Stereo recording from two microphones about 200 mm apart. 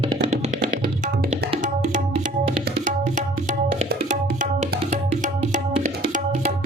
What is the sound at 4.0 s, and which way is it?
Tabla, 35° right (ahead or behind).